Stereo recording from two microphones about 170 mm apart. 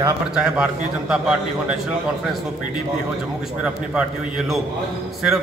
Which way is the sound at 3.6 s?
5° right (ahead or behind).